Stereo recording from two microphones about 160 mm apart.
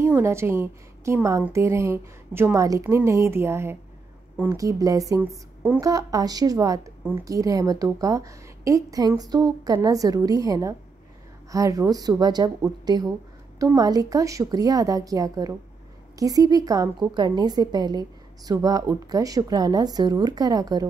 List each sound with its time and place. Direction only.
0.0 s a woman's voice: 15° right (ahead or behind)